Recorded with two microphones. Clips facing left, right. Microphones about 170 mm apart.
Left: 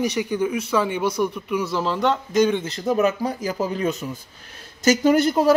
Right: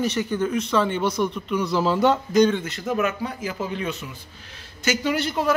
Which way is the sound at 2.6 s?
35° left (ahead or behind).